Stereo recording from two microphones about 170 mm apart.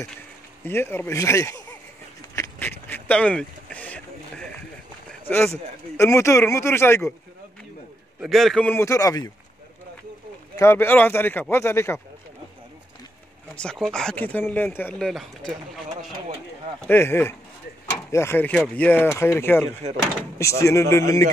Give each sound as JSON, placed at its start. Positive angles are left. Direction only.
{"t": 0.7, "sound": "speech", "side_deg": 15}
{"t": 2.3, "sound": "boat", "side_deg": 10}
{"t": 5.3, "sound": "speech", "side_deg": 15}
{"t": 8.2, "sound": "speech", "side_deg": 0}
{"t": 10.5, "sound": "speech", "side_deg": 15}
{"t": 13.6, "sound": "speech", "side_deg": 5}
{"t": 15.0, "sound": "speech", "side_deg": 0}
{"t": 16.8, "sound": "speech", "side_deg": 15}